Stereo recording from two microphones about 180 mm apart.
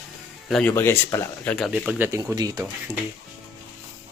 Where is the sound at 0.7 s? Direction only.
15° left (ahead or behind); by 2.9 s 20° right (ahead or behind).